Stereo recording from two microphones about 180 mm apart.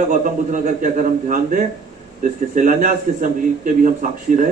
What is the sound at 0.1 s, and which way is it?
A man's voice, 45° right (ahead or behind).